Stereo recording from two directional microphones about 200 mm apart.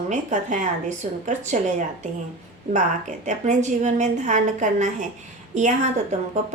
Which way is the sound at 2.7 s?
35° right (ahead or behind).